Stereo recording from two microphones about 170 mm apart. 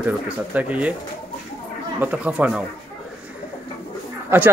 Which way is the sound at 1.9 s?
10° right (ahead or behind).